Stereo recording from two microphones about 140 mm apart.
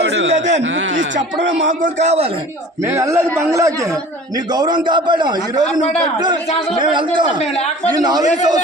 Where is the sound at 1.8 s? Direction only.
55° right (ahead or behind).